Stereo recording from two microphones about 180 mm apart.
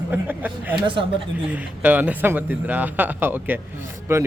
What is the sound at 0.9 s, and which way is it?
Speech, 30° right (ahead or behind).